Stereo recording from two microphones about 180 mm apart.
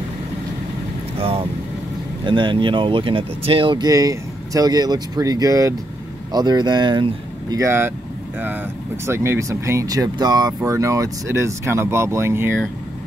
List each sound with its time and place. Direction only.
1.1 s speech: 30° right (ahead or behind); by 7.9 s 15° right (ahead or behind)
9.0 s speech: 15° right (ahead or behind)